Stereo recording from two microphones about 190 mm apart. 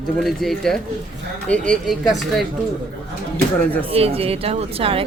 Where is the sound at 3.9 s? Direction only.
30° right (ahead or behind).